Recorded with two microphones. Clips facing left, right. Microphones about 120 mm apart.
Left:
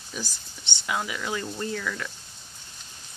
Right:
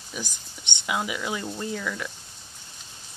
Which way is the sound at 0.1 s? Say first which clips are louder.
Even; 15° right (ahead or behind).